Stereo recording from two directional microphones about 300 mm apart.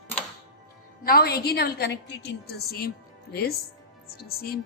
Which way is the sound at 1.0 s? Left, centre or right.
Left.